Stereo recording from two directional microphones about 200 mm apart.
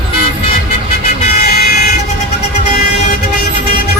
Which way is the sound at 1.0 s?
50° left (ahead or behind).